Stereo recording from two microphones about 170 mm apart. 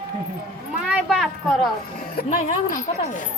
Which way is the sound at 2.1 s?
55° left (ahead or behind).